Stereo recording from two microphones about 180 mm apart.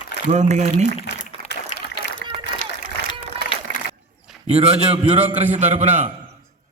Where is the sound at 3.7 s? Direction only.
45° right (ahead or behind).